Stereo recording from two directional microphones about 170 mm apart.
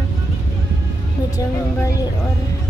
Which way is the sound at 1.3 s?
20° left (ahead or behind).